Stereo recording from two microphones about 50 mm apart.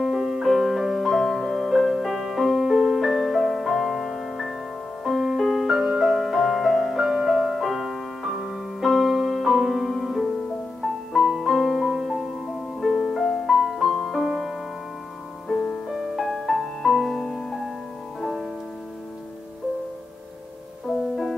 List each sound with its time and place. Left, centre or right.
0.0 s music: centre
12.8 s music: centre
13.1 s music: centre
15.4 s music: centre
15.9 s music: centre
21.0 s music: centre